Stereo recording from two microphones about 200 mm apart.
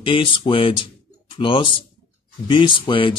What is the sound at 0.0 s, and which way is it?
Speech, 25° left (ahead or behind).